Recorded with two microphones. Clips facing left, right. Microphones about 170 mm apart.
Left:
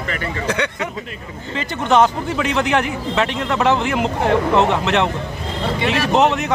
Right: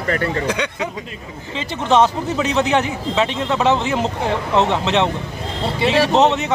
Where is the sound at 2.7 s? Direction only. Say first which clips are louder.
Even; 25° right (ahead or behind).